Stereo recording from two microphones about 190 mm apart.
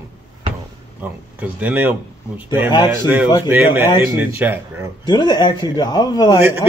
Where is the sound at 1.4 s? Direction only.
10° right (ahead or behind).